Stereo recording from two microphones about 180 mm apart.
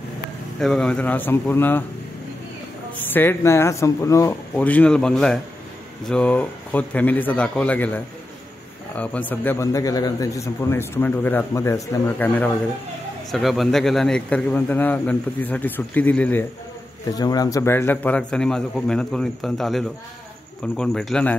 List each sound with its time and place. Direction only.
0.6 s a man's voice: 5° left (ahead or behind)
3.1 s a man's voice: 10° left (ahead or behind)
17.1 s a man's voice: 20° left (ahead or behind)